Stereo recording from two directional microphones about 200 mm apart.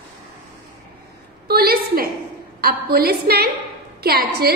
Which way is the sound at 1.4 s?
50° right (ahead or behind).